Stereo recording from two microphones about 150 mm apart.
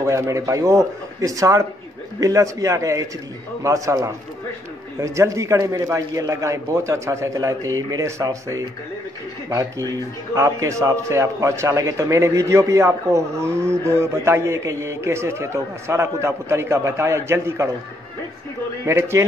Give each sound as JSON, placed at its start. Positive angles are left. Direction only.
{"t": 0.0, "sound": "a man's voice", "side_deg": -20}
{"t": 18.9, "sound": "a man's voice", "side_deg": -15}